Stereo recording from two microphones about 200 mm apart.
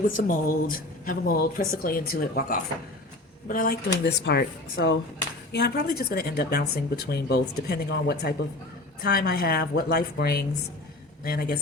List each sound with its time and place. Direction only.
0.2 s speech: 45° left (ahead or behind)